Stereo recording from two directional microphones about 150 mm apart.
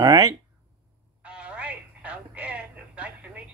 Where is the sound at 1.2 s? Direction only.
5° right (ahead or behind).